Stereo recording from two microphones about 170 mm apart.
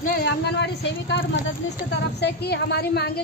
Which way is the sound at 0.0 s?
65° left (ahead or behind).